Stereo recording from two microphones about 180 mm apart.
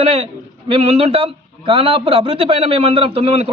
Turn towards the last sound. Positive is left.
turn(degrees=-35)  # may be behind; listen again after turning